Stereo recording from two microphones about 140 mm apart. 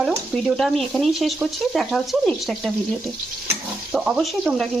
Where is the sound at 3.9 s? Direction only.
Centre (ahead or behind).